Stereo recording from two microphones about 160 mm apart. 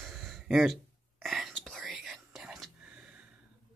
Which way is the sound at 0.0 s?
Centre (ahead or behind).